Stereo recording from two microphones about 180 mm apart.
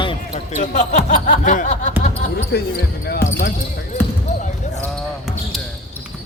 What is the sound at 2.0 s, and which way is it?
Basketball bounce, 35° left (ahead or behind).